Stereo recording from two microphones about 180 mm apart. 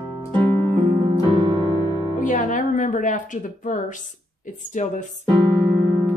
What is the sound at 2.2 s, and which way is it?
Music, 45° left (ahead or behind).